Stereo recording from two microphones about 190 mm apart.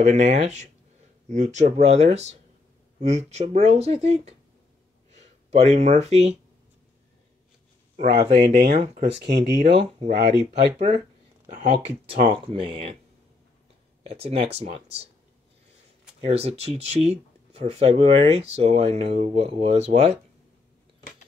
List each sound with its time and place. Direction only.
0.0 s speech: 35° right (ahead or behind)
8.1 s speech: 55° right (ahead or behind)
8.6 s speech: 45° right (ahead or behind)
9.1 s speech: 65° right (ahead or behind)
11.4 s speech: 40° right (ahead or behind)
14.0 s speech: 30° right (ahead or behind)
16.3 s speech: 35° right (ahead or behind)